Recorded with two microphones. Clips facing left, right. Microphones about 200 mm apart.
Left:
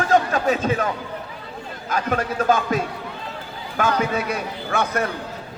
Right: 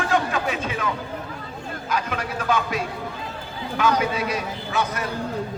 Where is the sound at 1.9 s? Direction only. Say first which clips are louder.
Left 4 dB; 45° left (ahead or behind).